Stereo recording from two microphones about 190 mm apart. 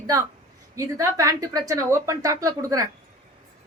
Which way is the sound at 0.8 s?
15° right (ahead or behind).